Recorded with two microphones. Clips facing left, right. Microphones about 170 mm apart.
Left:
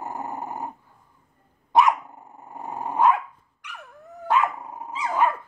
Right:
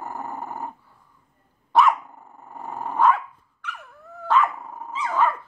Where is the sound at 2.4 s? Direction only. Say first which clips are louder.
Even; 15° left (ahead or behind).